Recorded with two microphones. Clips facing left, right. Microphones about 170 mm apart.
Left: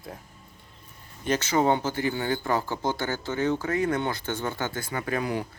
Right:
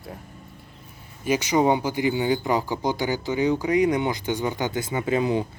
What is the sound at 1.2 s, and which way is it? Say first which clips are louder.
Speech: right 3 dB; 10° right (ahead or behind).